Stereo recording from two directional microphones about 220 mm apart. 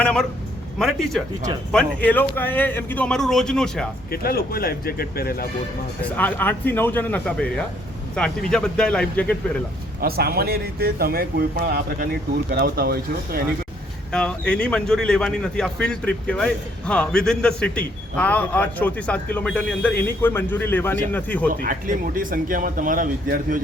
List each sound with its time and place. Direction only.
0.0 s a man's voice: 5° left (ahead or behind)
4.1 s speech: 45° left (ahead or behind)
6.1 s a man's voice: 10° left (ahead or behind)
10.0 s speech: 45° right (ahead or behind)
14.1 s a man's voice: 5° left (ahead or behind)
21.5 s speech: 40° right (ahead or behind)